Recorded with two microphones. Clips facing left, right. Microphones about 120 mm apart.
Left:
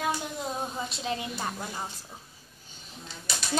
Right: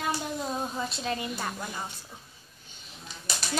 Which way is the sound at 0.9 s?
20° left (ahead or behind).